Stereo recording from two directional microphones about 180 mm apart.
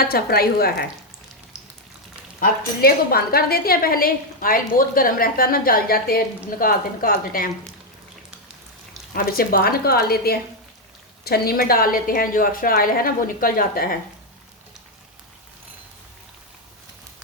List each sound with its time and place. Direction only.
0.0 s a woman's voice: 60° left (ahead or behind)
1.5 s a sound: centre (ahead or behind)
2.4 s a woman's voice: 55° left (ahead or behind)
9.1 s a woman's voice: 55° left (ahead or behind)